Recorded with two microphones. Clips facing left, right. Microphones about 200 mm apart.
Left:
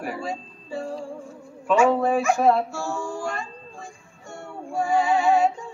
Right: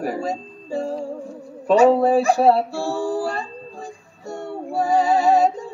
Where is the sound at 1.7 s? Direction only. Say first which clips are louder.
Right 5 dB; 35° right (ahead or behind).